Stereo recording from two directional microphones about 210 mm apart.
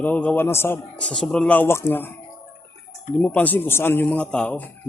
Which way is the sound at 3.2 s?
5° left (ahead or behind).